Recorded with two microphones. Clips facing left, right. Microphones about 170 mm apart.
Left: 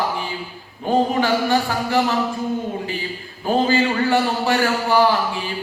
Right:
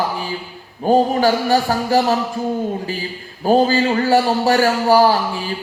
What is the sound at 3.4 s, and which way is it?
Speech, 40° right (ahead or behind).